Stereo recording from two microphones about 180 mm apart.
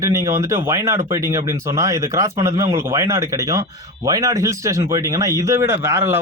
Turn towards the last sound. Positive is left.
turn(degrees=-15)  # may be behind; listen again after turning